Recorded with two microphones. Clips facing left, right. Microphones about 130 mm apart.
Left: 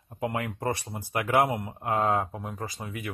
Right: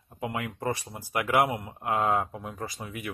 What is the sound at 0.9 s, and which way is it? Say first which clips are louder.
Speech: even; 25° left (ahead or behind).